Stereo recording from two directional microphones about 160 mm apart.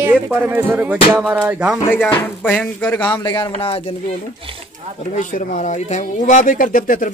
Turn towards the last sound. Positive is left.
turn(degrees=60)  # may be behind; listen again after turning